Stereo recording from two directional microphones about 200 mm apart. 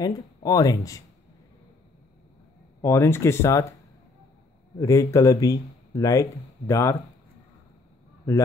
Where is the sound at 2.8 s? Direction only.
15° left (ahead or behind).